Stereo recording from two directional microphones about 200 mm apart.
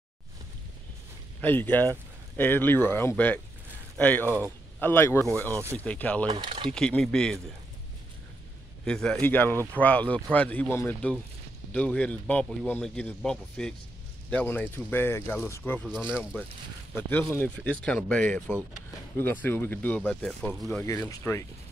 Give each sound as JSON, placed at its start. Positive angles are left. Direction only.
{"t": 1.4, "sound": "speech", "side_deg": 10}
{"t": 6.2, "sound": "speech", "side_deg": -25}
{"t": 6.7, "sound": "speech", "side_deg": 5}
{"t": 8.8, "sound": "speech", "side_deg": 5}
{"t": 20.8, "sound": "speech", "side_deg": 15}